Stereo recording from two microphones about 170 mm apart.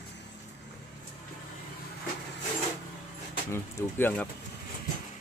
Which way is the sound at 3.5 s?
15° left (ahead or behind).